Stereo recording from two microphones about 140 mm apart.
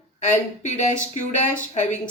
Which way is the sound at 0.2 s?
60° left (ahead or behind).